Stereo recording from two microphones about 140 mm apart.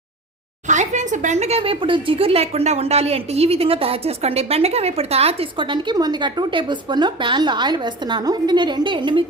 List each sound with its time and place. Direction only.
0.7 s speech: 60° right (ahead or behind); by 9.2 s 35° right (ahead or behind)